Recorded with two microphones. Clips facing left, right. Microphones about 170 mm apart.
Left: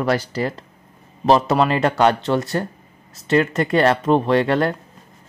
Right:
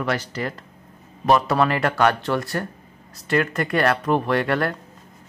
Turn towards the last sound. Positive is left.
turn(degrees=25)  # may be behind; listen again after turning